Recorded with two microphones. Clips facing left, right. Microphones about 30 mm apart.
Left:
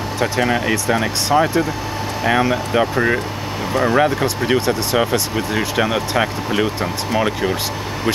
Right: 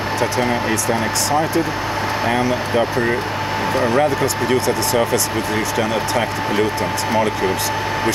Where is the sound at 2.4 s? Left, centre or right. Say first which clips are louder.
Left 1 dB; left.